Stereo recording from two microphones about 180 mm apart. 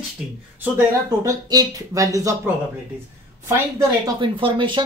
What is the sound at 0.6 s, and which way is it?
Speech, 15° right (ahead or behind).